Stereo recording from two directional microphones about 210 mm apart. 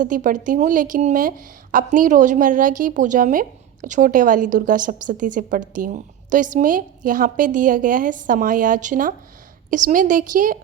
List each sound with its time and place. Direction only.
0.0 s a woman's voice: 40° right (ahead or behind)